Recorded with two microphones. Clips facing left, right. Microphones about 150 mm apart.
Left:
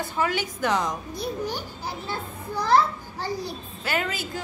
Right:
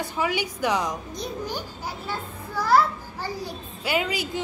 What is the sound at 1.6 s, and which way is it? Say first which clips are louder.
Children playing: even; 10° right (ahead or behind).